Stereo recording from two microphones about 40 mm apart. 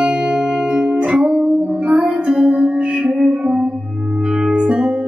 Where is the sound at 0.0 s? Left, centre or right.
Right.